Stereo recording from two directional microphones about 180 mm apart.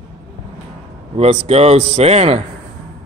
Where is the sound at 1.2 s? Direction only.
35° right (ahead or behind).